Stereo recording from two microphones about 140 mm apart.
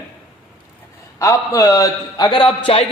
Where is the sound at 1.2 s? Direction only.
25° left (ahead or behind); by 2.9 s 40° left (ahead or behind).